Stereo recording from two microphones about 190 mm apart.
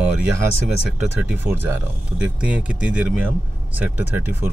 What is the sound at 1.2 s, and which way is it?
Speech, 10° right (ahead or behind).